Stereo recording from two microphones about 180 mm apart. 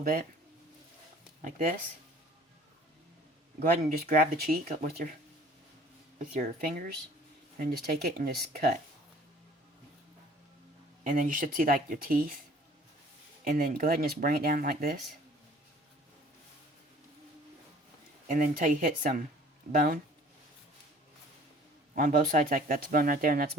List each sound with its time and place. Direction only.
3.6 s speech: 50° right (ahead or behind)
6.3 s speech: 55° right (ahead or behind)
11.0 s speech: 50° right (ahead or behind)
13.4 s speech: 55° right (ahead or behind)
18.3 s speech: 50° right (ahead or behind)
21.9 s speech: 50° right (ahead or behind)